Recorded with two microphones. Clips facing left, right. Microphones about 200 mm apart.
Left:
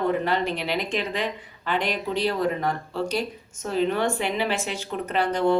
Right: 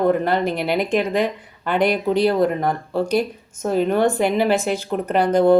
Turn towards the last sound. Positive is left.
turn(degrees=-50)  # may be behind; listen again after turning